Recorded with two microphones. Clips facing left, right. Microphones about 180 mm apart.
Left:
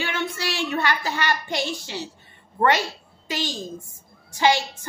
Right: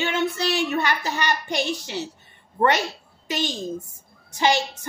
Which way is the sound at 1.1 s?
20° right (ahead or behind).